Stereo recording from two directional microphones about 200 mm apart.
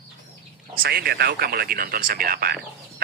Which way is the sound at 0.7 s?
50° right (ahead or behind).